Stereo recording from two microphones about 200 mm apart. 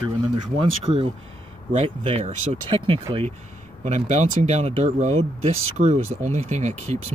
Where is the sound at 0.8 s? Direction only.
30° right (ahead or behind).